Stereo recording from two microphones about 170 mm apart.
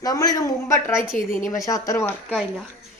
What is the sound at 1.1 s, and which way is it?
Speech, 50° left (ahead or behind).